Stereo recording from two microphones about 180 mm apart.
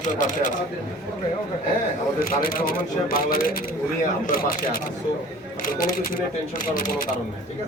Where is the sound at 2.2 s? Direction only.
55° left (ahead or behind).